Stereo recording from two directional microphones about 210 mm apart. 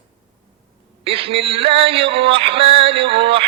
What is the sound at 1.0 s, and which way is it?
Synthetic singing, 25° right (ahead or behind).